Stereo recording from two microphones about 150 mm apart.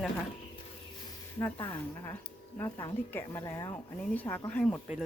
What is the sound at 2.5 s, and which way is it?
Speech, 15° left (ahead or behind).